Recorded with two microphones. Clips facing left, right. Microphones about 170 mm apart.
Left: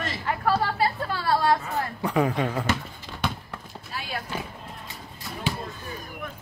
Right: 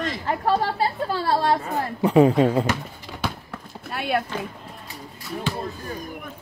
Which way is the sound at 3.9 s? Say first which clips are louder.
Right 10 dB; 60° right (ahead or behind).